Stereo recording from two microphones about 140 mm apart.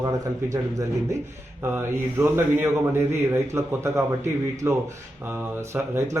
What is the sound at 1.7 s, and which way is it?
Speech, 15° right (ahead or behind).